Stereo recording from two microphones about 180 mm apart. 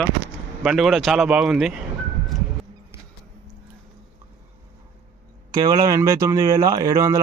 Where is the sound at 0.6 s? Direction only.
Centre (ahead or behind).